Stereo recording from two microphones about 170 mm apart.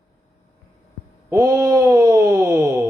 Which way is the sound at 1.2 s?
20° right (ahead or behind).